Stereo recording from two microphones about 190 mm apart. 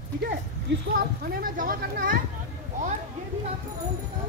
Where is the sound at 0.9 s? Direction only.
50° right (ahead or behind).